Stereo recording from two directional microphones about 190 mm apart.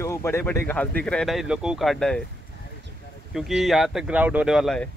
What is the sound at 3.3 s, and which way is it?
Speech, centre (ahead or behind).